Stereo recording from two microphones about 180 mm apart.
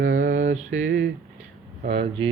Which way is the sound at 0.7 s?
80° right.